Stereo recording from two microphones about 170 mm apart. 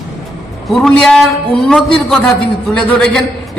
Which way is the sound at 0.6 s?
Centre (ahead or behind).